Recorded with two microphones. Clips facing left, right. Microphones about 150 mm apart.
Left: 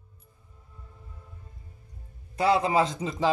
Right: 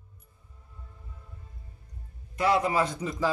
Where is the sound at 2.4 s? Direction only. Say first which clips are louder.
Left 2 dB; 30° left (ahead or behind).